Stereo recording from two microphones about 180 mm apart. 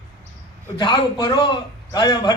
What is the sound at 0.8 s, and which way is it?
A man's voice, 25° left (ahead or behind).